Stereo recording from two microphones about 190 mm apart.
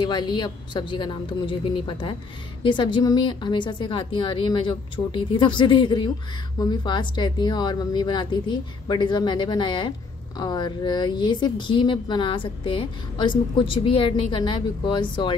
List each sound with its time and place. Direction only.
0.0 s speech: 25° left (ahead or behind)